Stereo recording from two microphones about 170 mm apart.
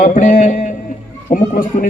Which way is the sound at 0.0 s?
55° left (ahead or behind).